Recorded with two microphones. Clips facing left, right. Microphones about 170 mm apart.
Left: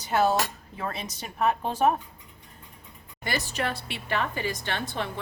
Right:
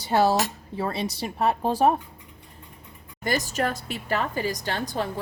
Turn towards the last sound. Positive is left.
turn(degrees=-40)  # may be behind; listen again after turning